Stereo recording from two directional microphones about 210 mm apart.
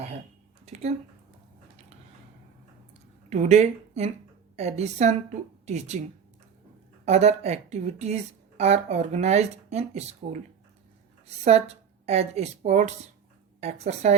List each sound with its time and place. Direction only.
0.6 s a sound: 30° right (ahead or behind)
3.2 s a woman's voice: 35° right (ahead or behind)
7.0 s a woman's voice: 30° right (ahead or behind)
11.3 s a woman's voice: 30° right (ahead or behind)